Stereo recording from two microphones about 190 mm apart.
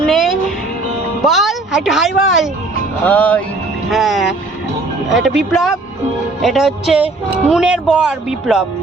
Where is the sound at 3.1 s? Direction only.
10° left (ahead or behind).